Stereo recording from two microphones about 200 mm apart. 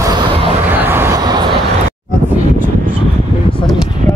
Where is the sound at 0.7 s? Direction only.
10° right (ahead or behind).